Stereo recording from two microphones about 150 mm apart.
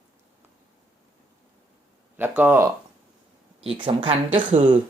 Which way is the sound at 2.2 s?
10° right (ahead or behind).